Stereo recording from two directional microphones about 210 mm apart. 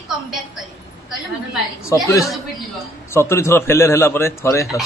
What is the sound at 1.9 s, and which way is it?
Speech, 15° left (ahead or behind).